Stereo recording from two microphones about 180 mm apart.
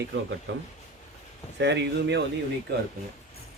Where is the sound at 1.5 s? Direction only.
75° right (ahead or behind).